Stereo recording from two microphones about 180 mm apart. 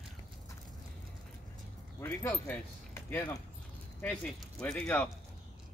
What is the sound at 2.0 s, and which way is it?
Speech, 10° left (ahead or behind).